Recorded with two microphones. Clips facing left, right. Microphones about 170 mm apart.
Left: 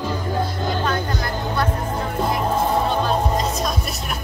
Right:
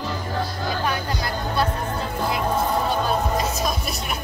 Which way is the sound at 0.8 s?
15° right (ahead or behind).